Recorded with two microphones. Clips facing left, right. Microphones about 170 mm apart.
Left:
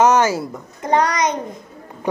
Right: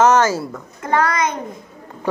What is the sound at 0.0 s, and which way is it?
A child's voice, 15° left (ahead or behind).